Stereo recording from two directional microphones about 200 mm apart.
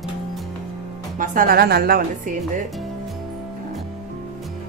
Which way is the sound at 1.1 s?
45° right (ahead or behind).